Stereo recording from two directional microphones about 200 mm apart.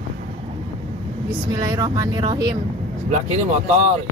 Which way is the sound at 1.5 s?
15° right (ahead or behind).